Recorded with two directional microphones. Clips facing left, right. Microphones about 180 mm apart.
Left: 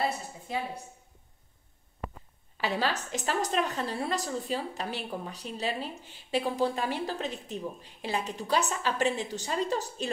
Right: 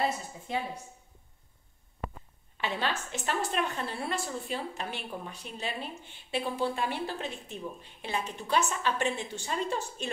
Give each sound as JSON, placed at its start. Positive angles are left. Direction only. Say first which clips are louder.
{"t": 2.5, "sound": "a woman's voice", "louder": "left 2 dB", "side_deg": 35}